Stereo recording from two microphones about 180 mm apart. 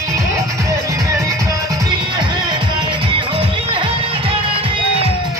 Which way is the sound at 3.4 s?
25° right (ahead or behind).